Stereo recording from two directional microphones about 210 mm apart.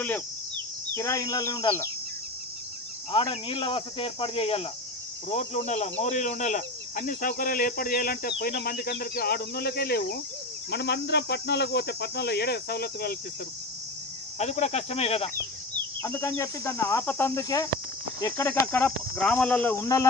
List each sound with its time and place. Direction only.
0.9 s speech: 15° left (ahead or behind)
3.1 s speech: 25° left (ahead or behind); by 13.1 s 45° left (ahead or behind)
14.3 s speech: 35° left (ahead or behind)
16.0 s speech: 10° left (ahead or behind)